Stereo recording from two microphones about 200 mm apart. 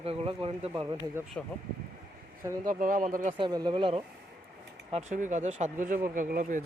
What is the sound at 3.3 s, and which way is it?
Speech, 20° right (ahead or behind).